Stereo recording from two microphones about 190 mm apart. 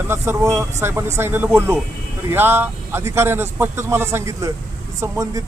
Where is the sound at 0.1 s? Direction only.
15° right (ahead or behind).